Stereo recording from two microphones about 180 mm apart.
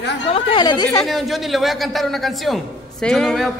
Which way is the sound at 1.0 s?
Centre (ahead or behind).